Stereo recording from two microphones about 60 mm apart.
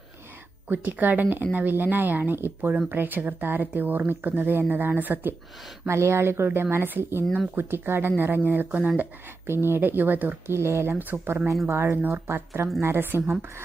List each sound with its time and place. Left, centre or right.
0.7 s speech: right
5.9 s speech: right
9.5 s speech: right
10.4 s speech: right
11.6 s speech: right